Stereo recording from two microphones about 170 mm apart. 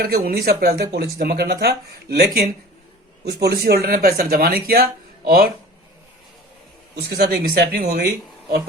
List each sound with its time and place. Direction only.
0.0 s speech: 60° right (ahead or behind)
6.9 s speech: 65° right (ahead or behind)